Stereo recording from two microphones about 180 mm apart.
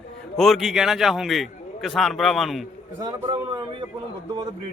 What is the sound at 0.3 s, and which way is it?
A man's voice, centre (ahead or behind).